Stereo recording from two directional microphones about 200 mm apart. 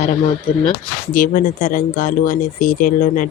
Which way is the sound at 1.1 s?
40° left (ahead or behind).